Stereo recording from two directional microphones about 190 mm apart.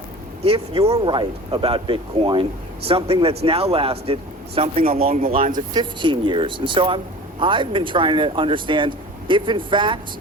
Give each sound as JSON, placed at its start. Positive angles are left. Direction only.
{"t": 0.4, "sound": "speech", "side_deg": -30}
{"t": 4.8, "sound": "speech", "side_deg": -50}
{"t": 5.7, "sound": "speech", "side_deg": -25}